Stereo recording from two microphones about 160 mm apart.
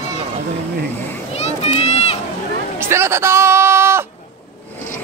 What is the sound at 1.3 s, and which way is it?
Run, 40° left (ahead or behind).